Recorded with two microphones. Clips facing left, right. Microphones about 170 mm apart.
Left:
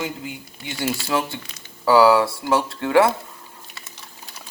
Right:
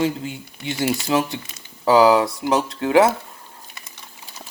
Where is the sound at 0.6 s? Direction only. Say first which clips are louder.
Right 4 dB; 20° right (ahead or behind).